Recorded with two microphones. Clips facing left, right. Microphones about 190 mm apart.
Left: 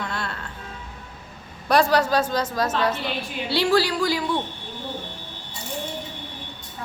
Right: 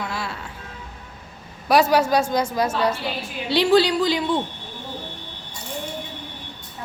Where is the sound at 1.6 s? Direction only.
10° right (ahead or behind).